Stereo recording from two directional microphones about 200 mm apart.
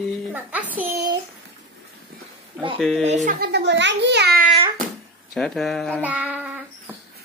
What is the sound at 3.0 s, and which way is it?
Speech, 40° right (ahead or behind).